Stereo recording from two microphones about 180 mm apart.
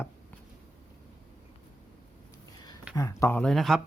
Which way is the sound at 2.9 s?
20° left (ahead or behind).